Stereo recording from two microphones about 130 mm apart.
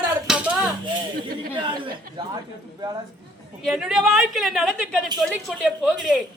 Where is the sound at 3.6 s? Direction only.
5° right (ahead or behind).